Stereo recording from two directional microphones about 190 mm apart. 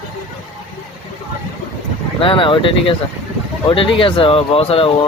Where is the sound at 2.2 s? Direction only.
25° left (ahead or behind).